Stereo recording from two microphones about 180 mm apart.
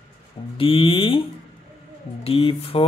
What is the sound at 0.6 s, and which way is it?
Speech, 30° left (ahead or behind).